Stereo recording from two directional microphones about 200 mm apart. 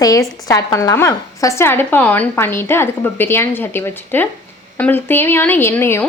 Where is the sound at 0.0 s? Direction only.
15° left (ahead or behind).